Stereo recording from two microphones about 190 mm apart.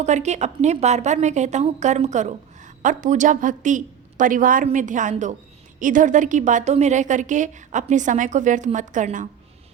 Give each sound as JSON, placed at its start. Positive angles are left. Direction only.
{"t": 0.0, "sound": "a woman's voice", "side_deg": -35}